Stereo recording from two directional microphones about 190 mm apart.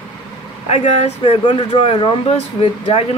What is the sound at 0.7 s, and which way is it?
Speech, 35° left (ahead or behind).